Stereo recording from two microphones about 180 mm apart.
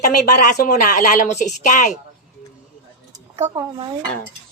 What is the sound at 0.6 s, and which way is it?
A woman's voice, 45° left (ahead or behind).